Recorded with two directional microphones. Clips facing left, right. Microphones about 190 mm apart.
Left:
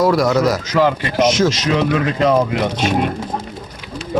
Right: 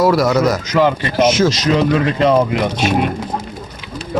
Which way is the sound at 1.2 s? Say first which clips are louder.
Right 1 dB; 5° right (ahead or behind).